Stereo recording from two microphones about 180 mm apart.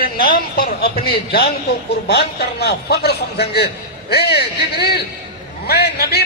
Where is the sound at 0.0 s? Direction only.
55° left (ahead or behind).